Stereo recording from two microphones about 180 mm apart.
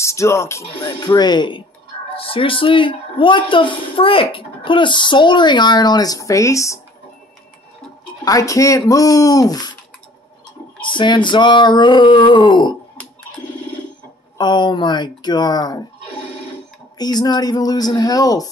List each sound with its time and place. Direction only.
0.0 s a woman's voice: 15° left (ahead or behind)
8.3 s a woman's voice: 20° left (ahead or behind)
10.8 s a woman's voice: 25° left (ahead or behind)
14.4 s a woman's voice: 25° left (ahead or behind)
17.0 s a woman's voice: 25° left (ahead or behind)